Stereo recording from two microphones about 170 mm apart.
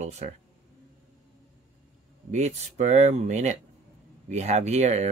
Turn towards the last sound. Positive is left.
turn(degrees=-40)  # may be behind; listen again after turning